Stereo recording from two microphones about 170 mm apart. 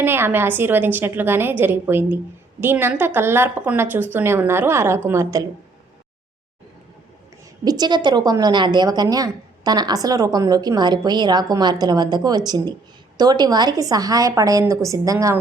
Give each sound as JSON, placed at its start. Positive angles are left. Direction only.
{"t": 0.0, "sound": "a woman's voice", "side_deg": -10}
{"t": 7.6, "sound": "a woman's voice", "side_deg": -25}